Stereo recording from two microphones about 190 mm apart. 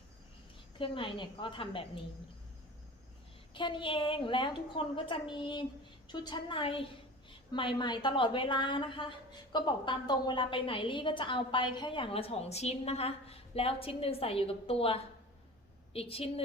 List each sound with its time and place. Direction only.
0.8 s a woman's voice: 25° left (ahead or behind)
3.5 s a woman's voice: 25° left (ahead or behind)